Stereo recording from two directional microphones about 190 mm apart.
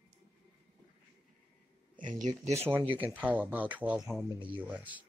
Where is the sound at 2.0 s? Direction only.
40° right (ahead or behind).